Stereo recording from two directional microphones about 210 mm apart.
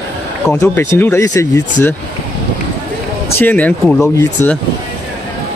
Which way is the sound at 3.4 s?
10° left (ahead or behind).